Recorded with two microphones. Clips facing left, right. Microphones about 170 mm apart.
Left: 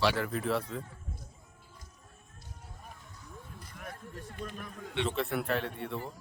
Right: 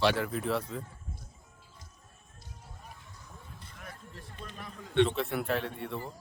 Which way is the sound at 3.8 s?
50° left (ahead or behind).